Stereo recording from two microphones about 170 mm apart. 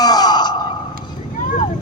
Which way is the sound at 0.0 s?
25° left (ahead or behind).